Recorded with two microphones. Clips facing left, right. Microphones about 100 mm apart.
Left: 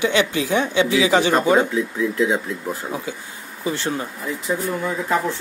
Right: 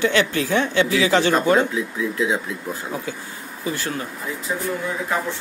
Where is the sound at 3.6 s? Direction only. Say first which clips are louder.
Left 3 dB; 25° left (ahead or behind).